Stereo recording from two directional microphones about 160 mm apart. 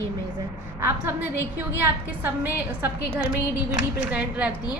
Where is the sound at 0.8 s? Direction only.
15° right (ahead or behind).